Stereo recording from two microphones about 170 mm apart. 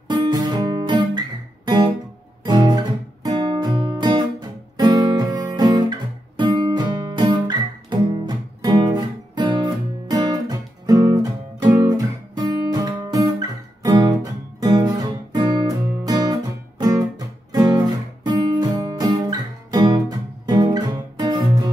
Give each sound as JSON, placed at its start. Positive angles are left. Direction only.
{"t": 0.1, "sound": "guitar", "side_deg": -25}
{"t": 2.4, "sound": "guitar", "side_deg": -25}
{"t": 3.3, "sound": "music", "side_deg": -25}
{"t": 11.6, "sound": "guitar", "side_deg": -25}
{"t": 17.5, "sound": "music", "side_deg": -25}